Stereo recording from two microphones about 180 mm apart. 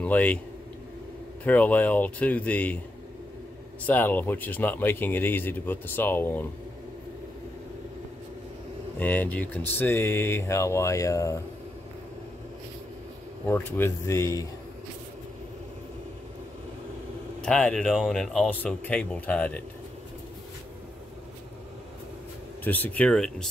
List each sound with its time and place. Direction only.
0.0 s speech: 10° left (ahead or behind)
1.4 s speech: 10° left (ahead or behind)
3.8 s speech: 10° left (ahead or behind)
9.0 s speech: 10° left (ahead or behind)
13.5 s speech: 10° left (ahead or behind)
17.4 s speech: 5° left (ahead or behind)
22.6 s speech: 10° left (ahead or behind)